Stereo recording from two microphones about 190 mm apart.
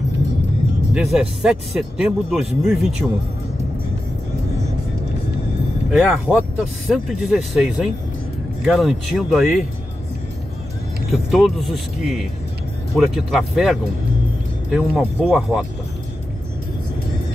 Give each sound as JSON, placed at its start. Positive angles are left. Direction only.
{"t": 0.9, "sound": "speech", "side_deg": -5}
{"t": 5.9, "sound": "speech", "side_deg": -5}
{"t": 11.1, "sound": "speech", "side_deg": 0}